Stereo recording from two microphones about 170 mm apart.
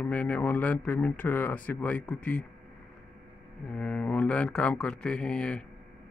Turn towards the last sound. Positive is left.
turn(degrees=5)  # may be behind; listen again after turning